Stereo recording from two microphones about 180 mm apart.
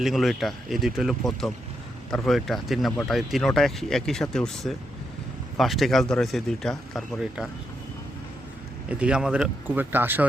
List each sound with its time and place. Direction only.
0.0 s speech: centre (ahead or behind)
8.9 s speech: 5° right (ahead or behind)